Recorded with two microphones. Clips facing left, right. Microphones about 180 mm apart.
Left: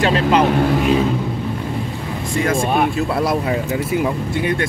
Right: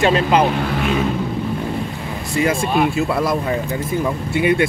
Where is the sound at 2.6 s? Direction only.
55° left (ahead or behind).